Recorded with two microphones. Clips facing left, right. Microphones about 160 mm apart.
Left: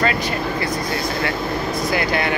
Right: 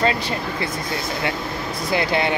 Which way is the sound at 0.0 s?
25° right (ahead or behind).